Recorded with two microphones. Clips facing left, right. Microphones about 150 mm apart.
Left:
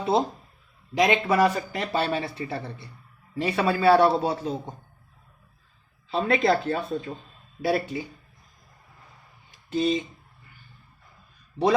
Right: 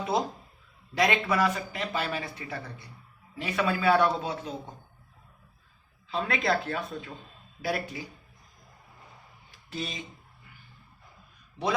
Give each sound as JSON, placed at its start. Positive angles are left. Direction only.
{"t": 0.0, "sound": "speech", "side_deg": 30}
{"t": 1.3, "sound": "speech", "side_deg": 35}
{"t": 6.1, "sound": "speech", "side_deg": 30}
{"t": 9.6, "sound": "speech", "side_deg": 25}